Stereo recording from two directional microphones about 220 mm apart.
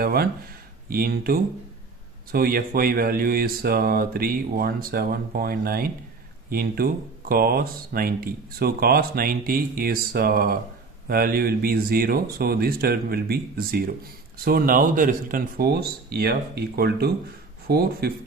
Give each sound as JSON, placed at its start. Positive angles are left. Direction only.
{"t": 0.0, "sound": "speech", "side_deg": -45}